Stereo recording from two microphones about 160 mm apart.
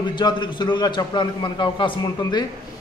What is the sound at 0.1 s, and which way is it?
A man's voice, 30° left (ahead or behind).